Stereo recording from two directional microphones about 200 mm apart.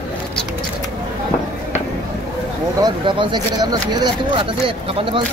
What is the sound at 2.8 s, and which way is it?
Speech, 25° right (ahead or behind).